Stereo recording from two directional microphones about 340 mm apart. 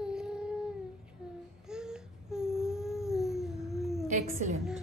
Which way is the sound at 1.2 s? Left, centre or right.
Centre.